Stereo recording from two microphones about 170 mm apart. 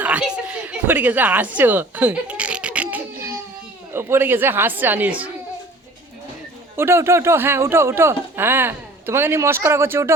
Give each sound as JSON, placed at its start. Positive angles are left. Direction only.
{"t": 0.0, "sound": "chuckle", "side_deg": -5}
{"t": 3.9, "sound": "speech", "side_deg": -15}
{"t": 6.7, "sound": "speech", "side_deg": -15}